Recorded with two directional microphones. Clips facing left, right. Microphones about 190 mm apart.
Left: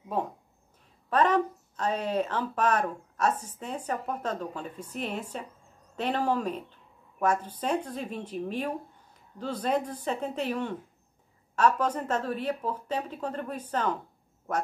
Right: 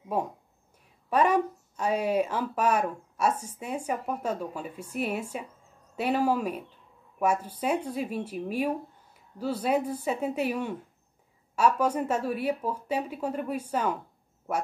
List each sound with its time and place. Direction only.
0.1 s speech: 10° right (ahead or behind)